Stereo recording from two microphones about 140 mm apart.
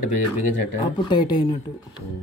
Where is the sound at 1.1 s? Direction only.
30° left (ahead or behind).